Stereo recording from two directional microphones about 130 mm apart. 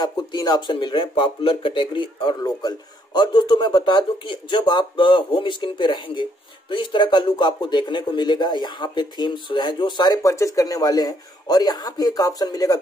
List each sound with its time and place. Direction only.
0.0 s speech: 30° left (ahead or behind)